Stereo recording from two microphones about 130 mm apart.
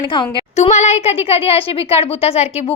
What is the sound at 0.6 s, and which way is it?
A woman's voice, 60° left (ahead or behind).